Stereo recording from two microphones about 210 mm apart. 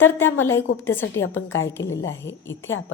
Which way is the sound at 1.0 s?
65° left (ahead or behind).